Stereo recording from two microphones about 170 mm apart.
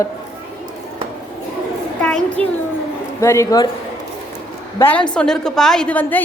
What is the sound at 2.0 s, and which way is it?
Speech, 5° left (ahead or behind).